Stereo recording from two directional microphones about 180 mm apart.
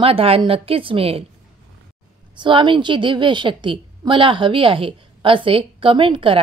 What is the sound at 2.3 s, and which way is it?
A woman's voice, 25° right (ahead or behind).